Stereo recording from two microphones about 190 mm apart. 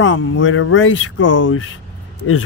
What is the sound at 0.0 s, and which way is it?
Speech, 90° left.